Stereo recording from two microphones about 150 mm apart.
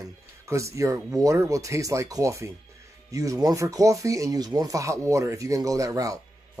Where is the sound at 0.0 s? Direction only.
20° right (ahead or behind).